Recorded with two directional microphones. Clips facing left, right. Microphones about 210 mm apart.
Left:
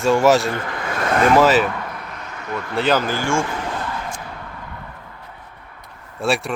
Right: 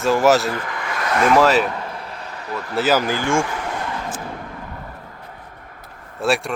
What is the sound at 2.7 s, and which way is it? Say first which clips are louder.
Speech: right 1 dB; 5° right (ahead or behind).